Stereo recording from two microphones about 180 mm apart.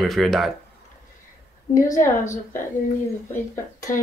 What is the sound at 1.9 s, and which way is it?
Speech, 45° left (ahead or behind).